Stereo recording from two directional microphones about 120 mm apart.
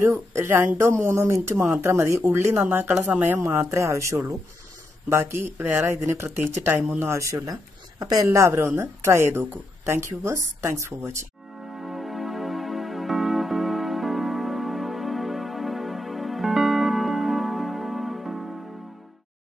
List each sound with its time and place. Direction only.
0.0 s speech: 25° right (ahead or behind)
11.7 s music: centre (ahead or behind)